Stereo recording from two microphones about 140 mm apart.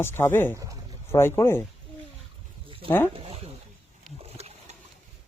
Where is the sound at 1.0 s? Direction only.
20° left (ahead or behind).